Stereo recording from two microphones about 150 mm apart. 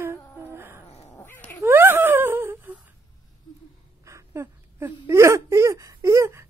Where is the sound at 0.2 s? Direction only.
15° left (ahead or behind).